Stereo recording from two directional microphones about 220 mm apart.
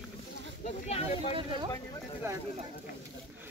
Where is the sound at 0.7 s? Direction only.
30° left (ahead or behind).